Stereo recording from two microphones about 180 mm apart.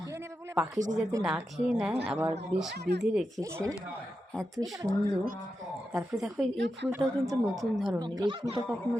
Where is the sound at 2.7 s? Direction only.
65° right (ahead or behind).